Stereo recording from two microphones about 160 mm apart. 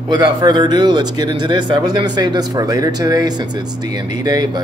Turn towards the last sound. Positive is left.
turn(degrees=-25)  # may be behind; listen again after turning